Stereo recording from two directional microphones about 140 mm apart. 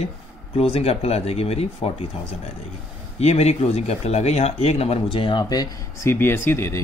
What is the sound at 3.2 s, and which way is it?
Speech, 50° left (ahead or behind).